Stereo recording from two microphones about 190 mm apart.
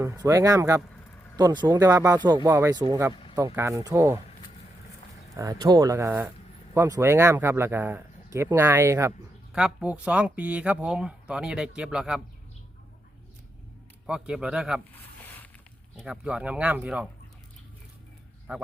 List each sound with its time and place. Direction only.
0.0 s speech: 15° right (ahead or behind)
5.4 s speech: 20° right (ahead or behind)
9.5 s speech: 5° right (ahead or behind)
14.1 s speech: 5° right (ahead or behind)
16.0 s speech: 5° right (ahead or behind)
18.5 s speech: 10° right (ahead or behind)